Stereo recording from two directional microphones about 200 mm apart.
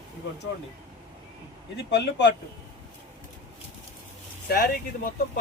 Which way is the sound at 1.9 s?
60° left (ahead or behind).